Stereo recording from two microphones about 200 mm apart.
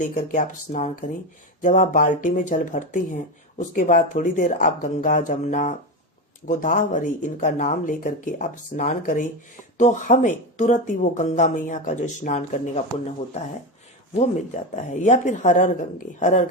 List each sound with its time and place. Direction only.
0.0 s speech: 40° left (ahead or behind)